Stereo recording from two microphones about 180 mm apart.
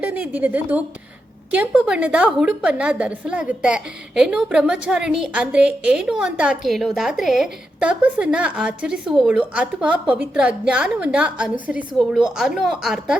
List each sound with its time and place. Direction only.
0.0 s a woman's voice: 10° right (ahead or behind)